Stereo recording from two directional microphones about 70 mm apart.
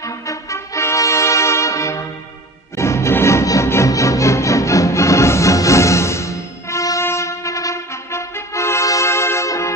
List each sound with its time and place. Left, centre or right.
0.3 s brass instrument: left
2.8 s music: left
7.0 s brass instrument: left